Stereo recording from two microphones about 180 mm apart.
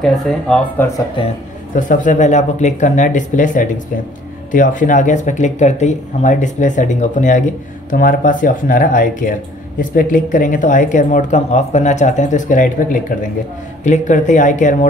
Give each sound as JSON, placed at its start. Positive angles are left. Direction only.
{"t": 0.0, "sound": "speech", "side_deg": 0}
{"t": 0.9, "sound": "speech", "side_deg": 30}
{"t": 1.8, "sound": "speech", "side_deg": 45}